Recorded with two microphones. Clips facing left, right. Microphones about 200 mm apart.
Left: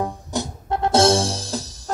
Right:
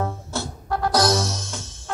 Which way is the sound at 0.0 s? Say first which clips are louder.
Left 2 dB; 15° left (ahead or behind).